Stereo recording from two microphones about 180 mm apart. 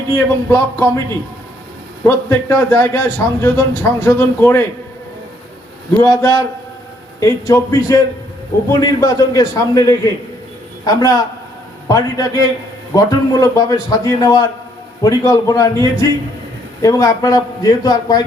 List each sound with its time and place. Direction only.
0.4 s a man's voice: 15° left (ahead or behind)
2.0 s a man's voice: 15° left (ahead or behind)
6.0 s a man's voice: 15° left (ahead or behind)